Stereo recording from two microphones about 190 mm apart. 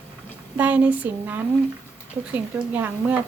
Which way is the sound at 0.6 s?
10° right (ahead or behind).